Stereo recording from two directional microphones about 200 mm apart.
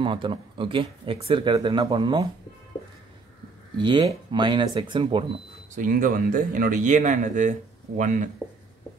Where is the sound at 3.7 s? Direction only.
20° right (ahead or behind).